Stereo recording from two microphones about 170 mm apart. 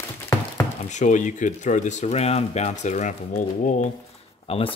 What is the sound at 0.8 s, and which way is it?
Speech, 45° left (ahead or behind).